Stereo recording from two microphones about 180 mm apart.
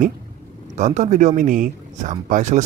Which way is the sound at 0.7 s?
40° right (ahead or behind).